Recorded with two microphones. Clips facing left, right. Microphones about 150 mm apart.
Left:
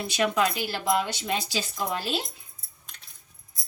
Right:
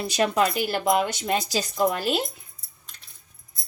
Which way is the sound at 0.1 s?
40° right (ahead or behind).